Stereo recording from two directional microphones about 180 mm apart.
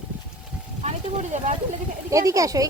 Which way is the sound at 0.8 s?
40° right (ahead or behind).